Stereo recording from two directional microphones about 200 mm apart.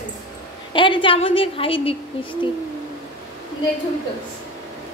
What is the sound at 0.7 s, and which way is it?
A woman's voice, 25° left (ahead or behind).